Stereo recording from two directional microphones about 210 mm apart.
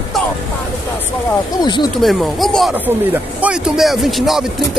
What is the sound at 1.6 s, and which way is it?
Speech, 20° left (ahead or behind).